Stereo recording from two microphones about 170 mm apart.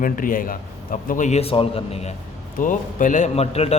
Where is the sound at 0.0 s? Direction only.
55° left (ahead or behind); by 2.1 s 35° left (ahead or behind).